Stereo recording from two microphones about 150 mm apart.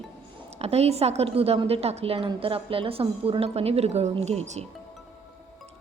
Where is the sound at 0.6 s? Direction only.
45° right (ahead or behind).